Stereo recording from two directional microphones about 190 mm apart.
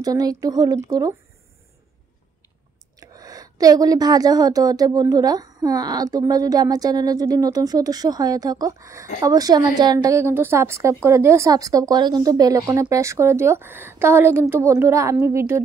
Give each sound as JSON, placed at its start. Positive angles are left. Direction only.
{"t": 0.0, "sound": "a woman's voice", "side_deg": -20}
{"t": 3.0, "sound": "a woman's voice", "side_deg": -20}